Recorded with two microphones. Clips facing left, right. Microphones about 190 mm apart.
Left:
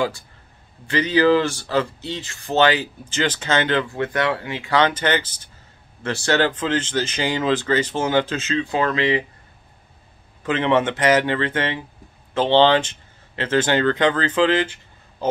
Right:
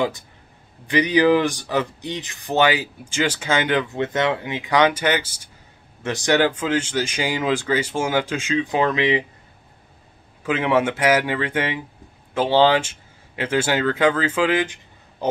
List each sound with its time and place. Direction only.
0.8 s speech: 15° right (ahead or behind)
10.4 s speech: 10° right (ahead or behind)